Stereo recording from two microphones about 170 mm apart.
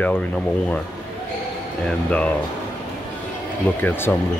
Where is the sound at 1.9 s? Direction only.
5° left (ahead or behind).